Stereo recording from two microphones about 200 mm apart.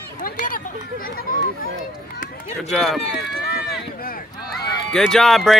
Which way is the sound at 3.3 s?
50° left (ahead or behind).